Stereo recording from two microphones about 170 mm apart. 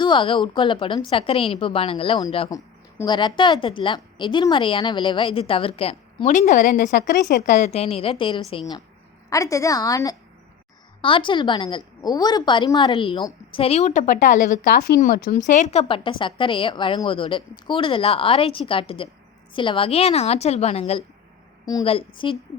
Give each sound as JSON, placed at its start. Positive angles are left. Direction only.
{"t": 0.0, "sound": "a woman's voice", "side_deg": 30}
{"t": 9.3, "sound": "a woman's voice", "side_deg": 20}